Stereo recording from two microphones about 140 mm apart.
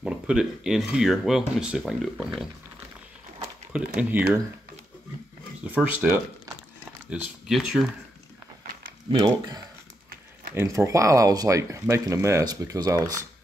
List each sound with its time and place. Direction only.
0.0 s speech: 5° right (ahead or behind)
3.7 s speech: 5° right (ahead or behind)
5.6 s speech: 10° right (ahead or behind)
7.1 s speech: 5° right (ahead or behind)
10.5 s speech: 15° right (ahead or behind)